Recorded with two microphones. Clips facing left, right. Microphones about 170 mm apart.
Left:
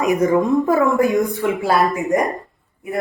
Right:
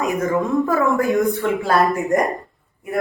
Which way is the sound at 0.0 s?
20° left (ahead or behind).